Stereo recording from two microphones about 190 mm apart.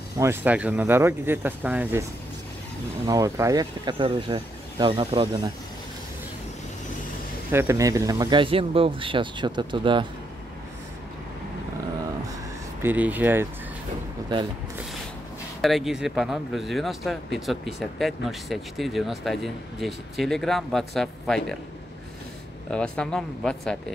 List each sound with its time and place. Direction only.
0.2 s speech: 10° right (ahead or behind)
3.1 s speech: 15° right (ahead or behind)
7.5 s speech: 15° right (ahead or behind)
12.8 s speech: 10° right (ahead or behind)
15.6 s speech: centre (ahead or behind)
22.7 s speech: 5° left (ahead or behind)